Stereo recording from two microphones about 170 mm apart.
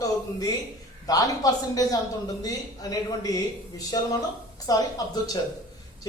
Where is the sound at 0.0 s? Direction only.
20° left (ahead or behind).